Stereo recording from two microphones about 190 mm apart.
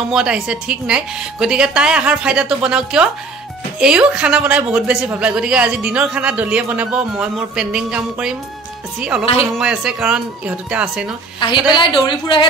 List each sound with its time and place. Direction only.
0.1 s speech: 5° right (ahead or behind)
9.6 s speech: 5° right (ahead or behind)
11.3 s a woman's voice: 25° left (ahead or behind)